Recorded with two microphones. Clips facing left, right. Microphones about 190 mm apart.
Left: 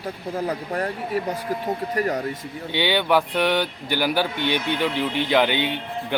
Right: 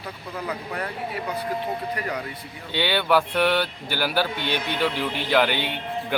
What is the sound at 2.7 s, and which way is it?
A man's voice, 15° left (ahead or behind).